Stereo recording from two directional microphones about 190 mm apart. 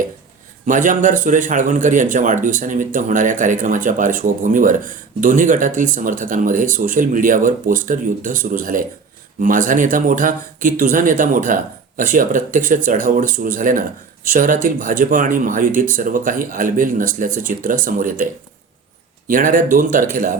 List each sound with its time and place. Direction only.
0.6 s speech: 45° right (ahead or behind)
19.3 s speech: 45° right (ahead or behind)